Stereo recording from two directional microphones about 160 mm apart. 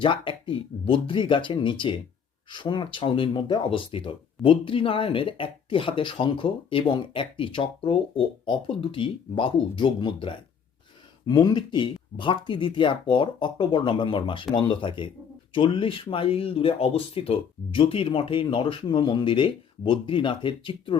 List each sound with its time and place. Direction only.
0.0 s speech: 35° left (ahead or behind)